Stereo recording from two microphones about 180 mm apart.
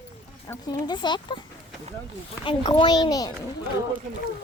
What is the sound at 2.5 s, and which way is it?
Speech, 25° left (ahead or behind).